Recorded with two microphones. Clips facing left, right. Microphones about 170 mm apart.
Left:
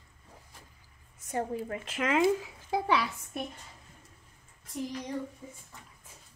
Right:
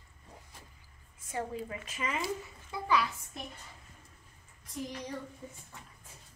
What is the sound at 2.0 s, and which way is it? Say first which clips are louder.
Speech: left 10 dB; 90° left.